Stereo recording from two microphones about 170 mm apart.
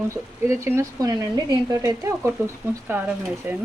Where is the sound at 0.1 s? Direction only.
15° right (ahead or behind).